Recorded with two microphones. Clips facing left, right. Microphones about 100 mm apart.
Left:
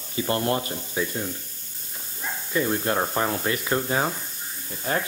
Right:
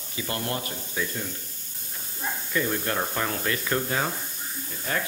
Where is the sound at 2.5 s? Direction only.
25° left (ahead or behind).